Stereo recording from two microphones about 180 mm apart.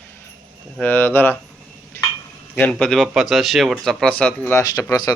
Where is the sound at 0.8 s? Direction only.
10° left (ahead or behind).